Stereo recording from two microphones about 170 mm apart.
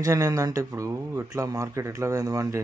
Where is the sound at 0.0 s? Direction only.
20° right (ahead or behind).